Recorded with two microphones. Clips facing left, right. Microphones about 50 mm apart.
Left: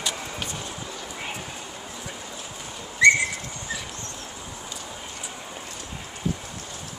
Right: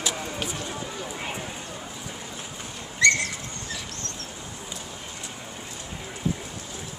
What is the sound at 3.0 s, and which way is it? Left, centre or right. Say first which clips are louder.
Bird: left 4 dB; centre.